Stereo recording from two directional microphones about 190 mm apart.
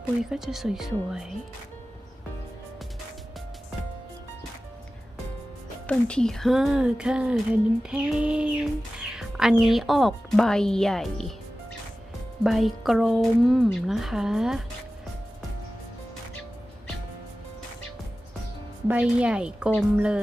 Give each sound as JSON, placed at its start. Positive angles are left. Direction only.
{"t": 0.2, "sound": "music", "side_deg": 0}
{"t": 5.9, "sound": "music", "side_deg": 5}
{"t": 12.4, "sound": "music", "side_deg": 0}
{"t": 18.9, "sound": "music", "side_deg": -5}